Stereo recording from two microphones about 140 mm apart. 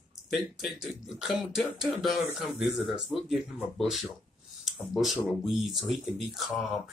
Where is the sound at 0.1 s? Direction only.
Centre (ahead or behind).